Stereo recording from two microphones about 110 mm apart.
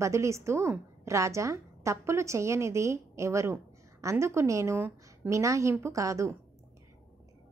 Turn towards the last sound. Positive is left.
turn(degrees=-30)  # may be behind; listen again after turning